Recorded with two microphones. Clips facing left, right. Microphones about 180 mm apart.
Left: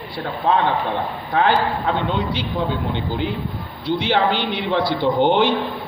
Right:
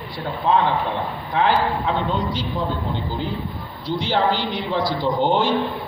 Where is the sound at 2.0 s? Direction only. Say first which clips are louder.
Left 1 dB; 65° left (ahead or behind).